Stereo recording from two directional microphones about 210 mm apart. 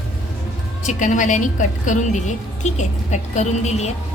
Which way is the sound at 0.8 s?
35° left (ahead or behind).